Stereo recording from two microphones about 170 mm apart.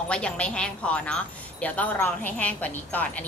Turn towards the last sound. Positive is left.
turn(degrees=10)  # may be behind; listen again after turning